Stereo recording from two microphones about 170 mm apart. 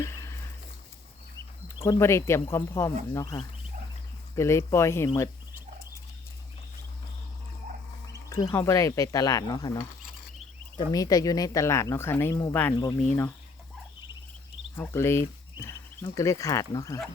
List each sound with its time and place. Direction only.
0.0 s a sound: 15° left (ahead or behind)
1.6 s speech: 15° left (ahead or behind)
8.1 s speech: 20° left (ahead or behind)
14.8 s speech: 15° left (ahead or behind)